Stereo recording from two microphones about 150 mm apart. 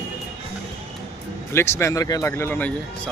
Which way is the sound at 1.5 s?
15° left (ahead or behind).